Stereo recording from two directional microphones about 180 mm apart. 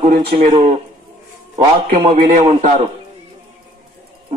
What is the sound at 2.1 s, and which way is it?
Speech, 50° right (ahead or behind).